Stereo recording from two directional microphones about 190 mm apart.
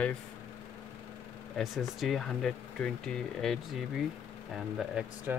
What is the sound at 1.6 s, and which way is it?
Speech, centre (ahead or behind).